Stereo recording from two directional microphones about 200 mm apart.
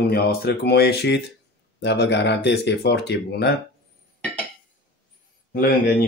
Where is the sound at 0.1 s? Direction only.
50° left (ahead or behind).